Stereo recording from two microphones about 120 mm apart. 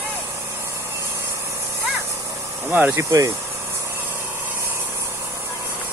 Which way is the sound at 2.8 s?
25° right (ahead or behind).